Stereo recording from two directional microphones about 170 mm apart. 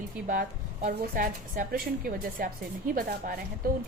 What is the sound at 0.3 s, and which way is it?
A woman's voice, 50° right (ahead or behind).